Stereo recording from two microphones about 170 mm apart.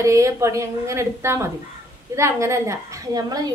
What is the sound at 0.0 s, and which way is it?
A woman's voice, 15° right (ahead or behind).